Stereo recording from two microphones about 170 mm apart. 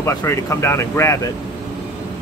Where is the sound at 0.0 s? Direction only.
15° left (ahead or behind).